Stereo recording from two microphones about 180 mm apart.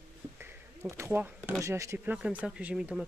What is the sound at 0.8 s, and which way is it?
Speech, 15° right (ahead or behind).